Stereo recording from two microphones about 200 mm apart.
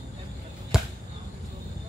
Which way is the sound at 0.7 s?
5° right (ahead or behind).